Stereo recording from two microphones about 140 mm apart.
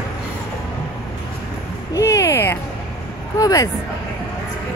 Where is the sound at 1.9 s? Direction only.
20° left (ahead or behind).